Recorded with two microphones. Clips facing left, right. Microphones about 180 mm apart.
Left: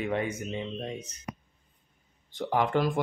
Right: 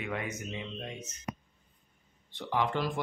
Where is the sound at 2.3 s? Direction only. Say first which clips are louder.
Left 5 dB; 45° left (ahead or behind).